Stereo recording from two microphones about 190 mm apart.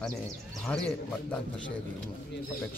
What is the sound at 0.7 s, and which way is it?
Speech, 5° left (ahead or behind).